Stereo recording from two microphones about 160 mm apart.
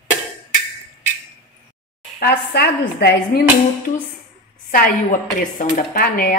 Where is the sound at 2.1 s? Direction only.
85° left.